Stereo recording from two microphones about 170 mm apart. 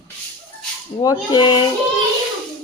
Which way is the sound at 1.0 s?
25° left (ahead or behind).